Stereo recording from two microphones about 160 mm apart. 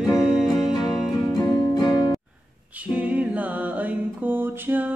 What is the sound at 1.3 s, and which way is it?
Music, 25° left (ahead or behind).